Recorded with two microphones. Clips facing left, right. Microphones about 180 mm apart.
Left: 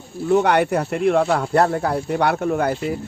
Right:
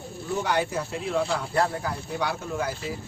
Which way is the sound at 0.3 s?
65° left (ahead or behind).